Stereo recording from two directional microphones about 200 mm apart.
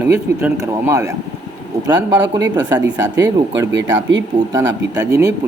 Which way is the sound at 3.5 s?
65° right (ahead or behind).